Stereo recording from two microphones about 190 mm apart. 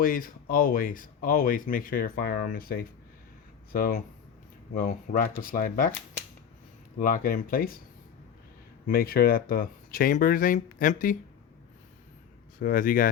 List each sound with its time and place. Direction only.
0.0 s speech: 50° left (ahead or behind)
7.0 s speech: 45° left (ahead or behind)
8.9 s speech: 50° left (ahead or behind)
12.5 s speech: 45° left (ahead or behind)